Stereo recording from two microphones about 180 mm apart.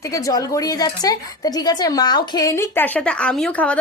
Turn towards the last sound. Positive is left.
turn(degrees=5)  # may be behind; listen again after turning